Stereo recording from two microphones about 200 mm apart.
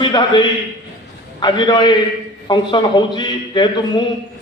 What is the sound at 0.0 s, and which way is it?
A man's voice, 20° left (ahead or behind).